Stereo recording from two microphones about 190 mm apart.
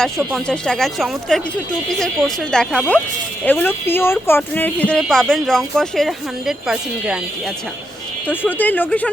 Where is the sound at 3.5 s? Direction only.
10° left (ahead or behind).